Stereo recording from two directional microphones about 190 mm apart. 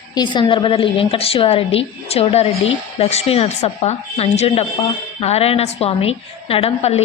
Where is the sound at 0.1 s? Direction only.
25° left (ahead or behind).